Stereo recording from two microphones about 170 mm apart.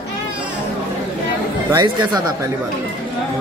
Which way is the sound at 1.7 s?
25° right (ahead or behind).